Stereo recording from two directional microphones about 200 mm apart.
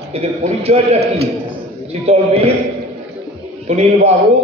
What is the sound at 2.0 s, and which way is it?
Speech, 30° right (ahead or behind).